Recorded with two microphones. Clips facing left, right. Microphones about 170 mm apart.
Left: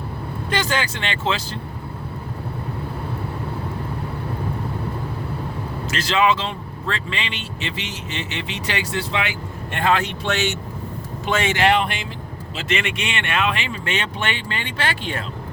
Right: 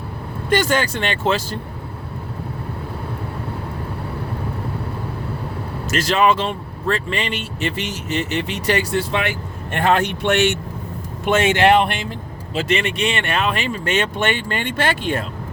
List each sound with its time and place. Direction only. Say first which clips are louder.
0.5 s a man's voice: right 6 dB; 50° right (ahead or behind)
5.9 s a man's voice: right 3 dB; 45° right (ahead or behind)
12.5 s a man's voice: right 5 dB; 35° right (ahead or behind)